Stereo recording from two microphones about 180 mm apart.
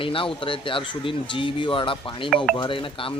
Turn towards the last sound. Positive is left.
turn(degrees=30)  # may be behind; listen again after turning